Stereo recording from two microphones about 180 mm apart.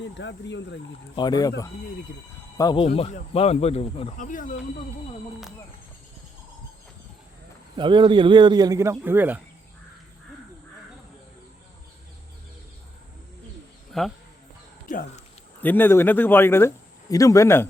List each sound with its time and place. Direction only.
0.0 s speech: 85° left
1.1 s speech: 25° left (ahead or behind)
2.8 s speech: 35° left (ahead or behind)
4.2 s speech: 45° left (ahead or behind)
7.8 s speech: 25° right (ahead or behind); by 9.4 s 10° right (ahead or behind)
13.9 s speech: centre (ahead or behind)
14.8 s speech: 45° left (ahead or behind)
15.6 s speech: 10° left (ahead or behind)